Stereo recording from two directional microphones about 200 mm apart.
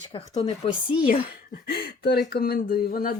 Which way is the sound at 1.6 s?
50° left (ahead or behind).